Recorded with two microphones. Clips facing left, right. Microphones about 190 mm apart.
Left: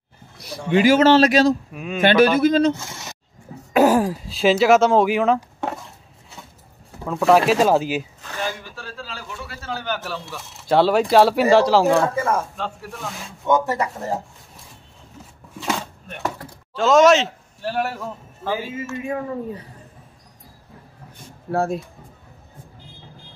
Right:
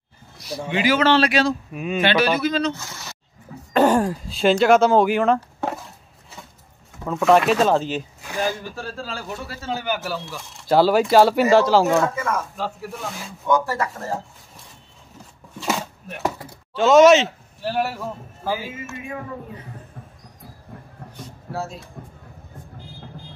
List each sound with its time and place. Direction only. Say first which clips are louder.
0.7 s a man's voice: left 5 dB; 45° left (ahead or behind)
1.7 s speech: right 3 dB; centre (ahead or behind)
2.0 s a man's voice: left 5 dB; 50° left (ahead or behind)
2.8 s speech: left 2 dB; 20° left (ahead or behind)
3.7 s speech: left 1 dB; 5° left (ahead or behind)
7.1 s speech: left 1 dB; centre (ahead or behind)
8.2 s a sound: right 4 dB; 10° right (ahead or behind)
8.7 s speech: right 4 dB; 45° right (ahead or behind)
9.7 s speech: right 2 dB; 15° right (ahead or behind)
12.0 s speech: left 2 dB; 30° left (ahead or behind)
12.5 s speech: right 1 dB; 5° right (ahead or behind)
13.5 s speech: left 1 dB; 20° left (ahead or behind)
15.6 s a sound: right 1 dB; 5° right (ahead or behind)
21.5 s speech: left 8 dB; 55° left (ahead or behind)